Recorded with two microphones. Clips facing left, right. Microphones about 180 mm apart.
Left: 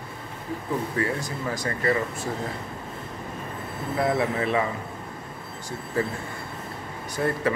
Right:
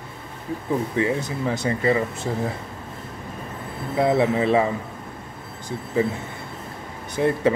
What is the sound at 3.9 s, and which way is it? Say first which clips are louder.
Speech: right 5 dB; 25° right (ahead or behind).